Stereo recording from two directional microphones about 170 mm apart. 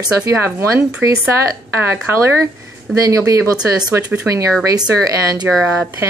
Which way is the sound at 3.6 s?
5° right (ahead or behind).